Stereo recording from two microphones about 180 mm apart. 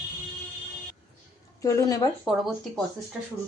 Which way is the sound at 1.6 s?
20° left (ahead or behind).